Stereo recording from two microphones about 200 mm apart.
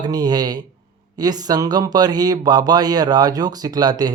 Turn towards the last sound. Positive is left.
turn(degrees=-20)  # may be behind; listen again after turning